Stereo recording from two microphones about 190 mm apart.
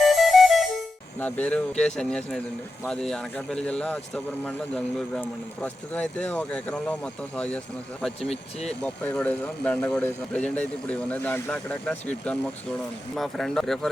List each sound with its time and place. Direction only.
0.0 s music: centre (ahead or behind)
1.2 s speech: 5° left (ahead or behind)
8.2 s speech: 35° left (ahead or behind)
8.8 s speech: 5° left (ahead or behind)